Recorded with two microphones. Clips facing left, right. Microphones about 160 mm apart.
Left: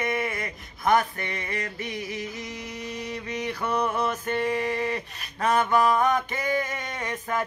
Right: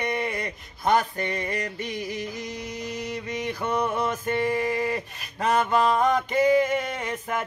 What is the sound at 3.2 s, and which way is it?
Music, 10° right (ahead or behind).